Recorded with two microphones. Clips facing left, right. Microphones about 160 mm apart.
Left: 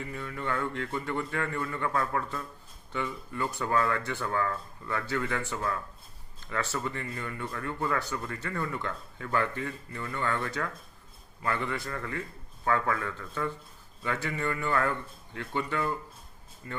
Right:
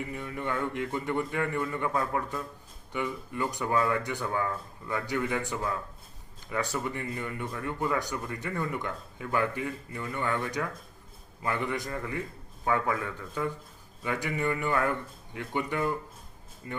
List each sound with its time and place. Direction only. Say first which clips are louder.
0.0 s speech: right 1 dB; 20° right (ahead or behind)